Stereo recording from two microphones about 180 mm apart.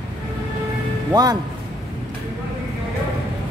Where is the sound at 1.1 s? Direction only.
20° right (ahead or behind).